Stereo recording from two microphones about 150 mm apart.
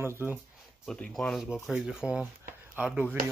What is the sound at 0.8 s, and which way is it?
Speech, 5° left (ahead or behind).